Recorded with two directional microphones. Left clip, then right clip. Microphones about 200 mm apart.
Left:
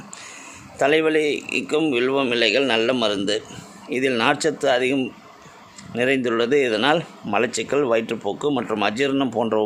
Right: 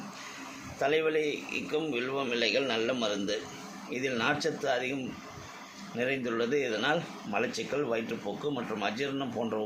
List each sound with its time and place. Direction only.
0.8 s speech: 55° left (ahead or behind)
6.0 s speech: 55° left (ahead or behind)